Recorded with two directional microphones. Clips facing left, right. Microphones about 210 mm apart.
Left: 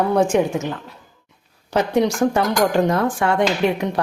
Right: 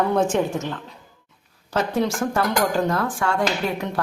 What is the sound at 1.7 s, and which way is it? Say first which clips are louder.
Speech: left 4 dB; 15° left (ahead or behind).